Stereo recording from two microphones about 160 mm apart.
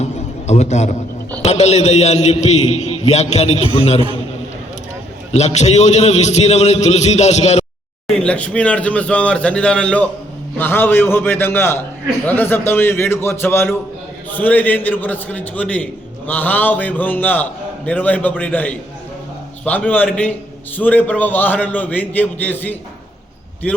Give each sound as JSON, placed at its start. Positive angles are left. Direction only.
{"t": 0.0, "sound": "a sound", "side_deg": 45}
{"t": 1.4, "sound": "a man's voice", "side_deg": 45}
{"t": 5.3, "sound": "a man's voice", "side_deg": 45}
{"t": 8.0, "sound": "a man's voice", "side_deg": 5}